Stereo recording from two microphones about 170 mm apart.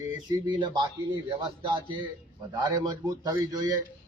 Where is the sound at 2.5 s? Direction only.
25° right (ahead or behind).